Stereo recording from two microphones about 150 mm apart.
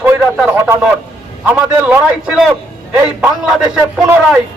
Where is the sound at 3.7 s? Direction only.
5° right (ahead or behind).